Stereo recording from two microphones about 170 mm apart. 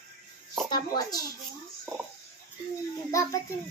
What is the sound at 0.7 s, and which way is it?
Speech, 20° left (ahead or behind).